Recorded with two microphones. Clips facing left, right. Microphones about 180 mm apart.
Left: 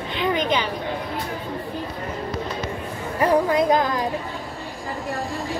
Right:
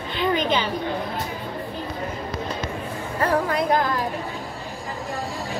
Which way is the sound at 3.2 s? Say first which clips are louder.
Left 4 dB; 15° left (ahead or behind).